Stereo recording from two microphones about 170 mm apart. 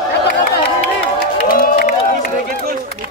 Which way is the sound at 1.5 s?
60° left (ahead or behind).